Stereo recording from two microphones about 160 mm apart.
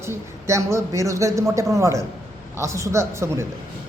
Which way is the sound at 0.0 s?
15° right (ahead or behind).